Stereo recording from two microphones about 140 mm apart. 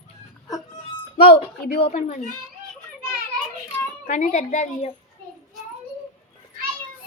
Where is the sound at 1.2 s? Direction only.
90° left.